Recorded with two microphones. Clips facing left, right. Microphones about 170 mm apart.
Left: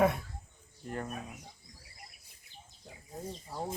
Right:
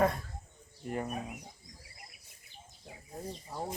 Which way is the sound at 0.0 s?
5° left (ahead or behind).